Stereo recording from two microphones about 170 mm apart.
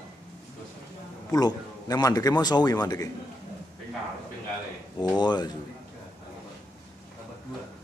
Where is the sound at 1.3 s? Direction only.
25° left (ahead or behind).